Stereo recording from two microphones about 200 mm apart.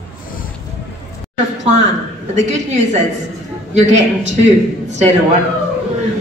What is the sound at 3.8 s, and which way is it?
Speech, 35° right (ahead or behind).